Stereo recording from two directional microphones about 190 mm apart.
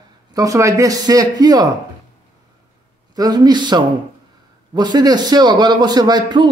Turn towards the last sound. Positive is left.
turn(degrees=-25)  # may be behind; listen again after turning